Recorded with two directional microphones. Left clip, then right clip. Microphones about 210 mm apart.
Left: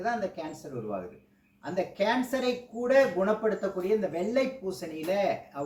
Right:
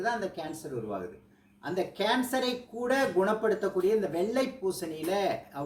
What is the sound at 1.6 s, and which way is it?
Speech, 5° left (ahead or behind).